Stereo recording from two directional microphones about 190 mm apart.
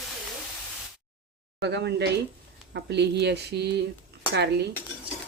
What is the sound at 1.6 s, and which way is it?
Speech, 65° right (ahead or behind).